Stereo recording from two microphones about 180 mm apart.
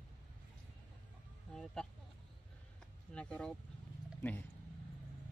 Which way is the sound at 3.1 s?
5° left (ahead or behind).